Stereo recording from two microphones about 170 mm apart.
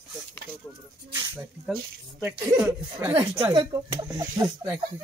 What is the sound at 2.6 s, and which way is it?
Speech, 10° right (ahead or behind).